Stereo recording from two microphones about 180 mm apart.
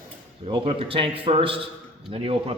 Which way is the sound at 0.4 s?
30° right (ahead or behind).